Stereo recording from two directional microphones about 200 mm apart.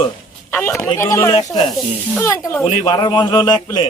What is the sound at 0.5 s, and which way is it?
Speech, 10° left (ahead or behind).